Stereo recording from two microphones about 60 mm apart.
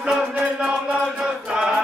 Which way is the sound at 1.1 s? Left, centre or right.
Centre.